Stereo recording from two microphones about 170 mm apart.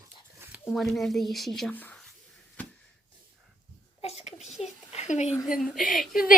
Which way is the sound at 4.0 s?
40° left (ahead or behind).